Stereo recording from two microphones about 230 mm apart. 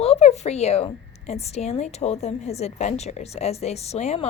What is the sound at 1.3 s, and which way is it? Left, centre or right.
A woman's voice, left.